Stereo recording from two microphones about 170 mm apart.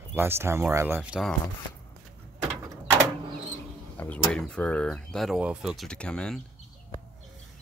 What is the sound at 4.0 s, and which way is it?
Speech, 5° left (ahead or behind).